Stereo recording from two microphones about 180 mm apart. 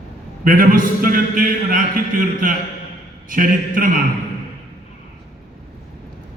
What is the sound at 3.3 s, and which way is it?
Speech, 50° right (ahead or behind).